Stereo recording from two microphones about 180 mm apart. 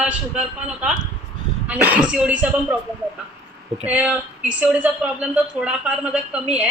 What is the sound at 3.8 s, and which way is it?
A woman's voice, 5° right (ahead or behind).